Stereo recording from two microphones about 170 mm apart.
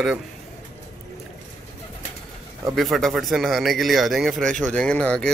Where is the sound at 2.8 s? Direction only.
Centre (ahead or behind).